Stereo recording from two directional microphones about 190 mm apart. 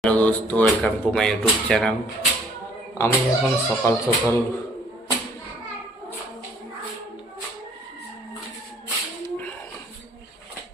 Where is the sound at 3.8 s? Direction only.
15° left (ahead or behind).